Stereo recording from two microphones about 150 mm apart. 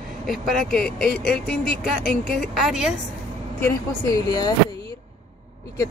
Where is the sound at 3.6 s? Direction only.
15° left (ahead or behind).